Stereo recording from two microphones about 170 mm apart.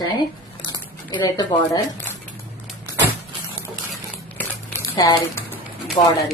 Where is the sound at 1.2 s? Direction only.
20° left (ahead or behind).